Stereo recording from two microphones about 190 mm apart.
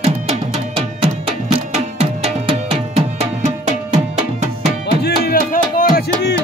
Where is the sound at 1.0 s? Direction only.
35° right (ahead or behind).